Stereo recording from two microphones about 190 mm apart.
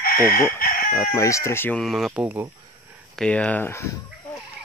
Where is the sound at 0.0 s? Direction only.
50° left (ahead or behind).